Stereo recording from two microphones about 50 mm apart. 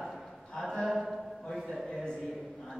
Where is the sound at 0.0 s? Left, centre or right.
Centre.